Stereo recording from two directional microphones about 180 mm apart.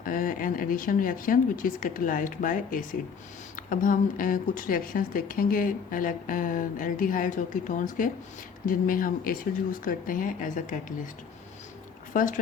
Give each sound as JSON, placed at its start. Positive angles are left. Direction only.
{"t": 0.0, "sound": "a woman's voice", "side_deg": 50}
{"t": 12.1, "sound": "a woman's voice", "side_deg": 50}